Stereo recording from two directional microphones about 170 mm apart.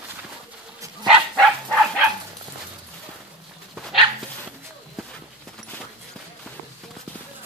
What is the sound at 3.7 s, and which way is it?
Dog, centre (ahead or behind).